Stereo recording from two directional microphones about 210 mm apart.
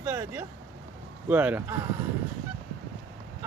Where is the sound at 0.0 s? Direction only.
10° right (ahead or behind).